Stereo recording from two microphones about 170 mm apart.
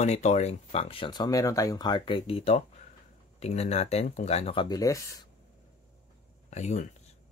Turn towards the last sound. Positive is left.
turn(degrees=40)  # may be behind; listen again after turning